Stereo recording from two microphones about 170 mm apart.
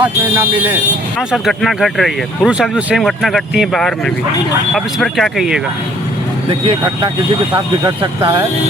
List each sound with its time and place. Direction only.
0.0 s speech: 10° right (ahead or behind)
1.3 s speech: centre (ahead or behind)
6.5 s speech: 30° right (ahead or behind)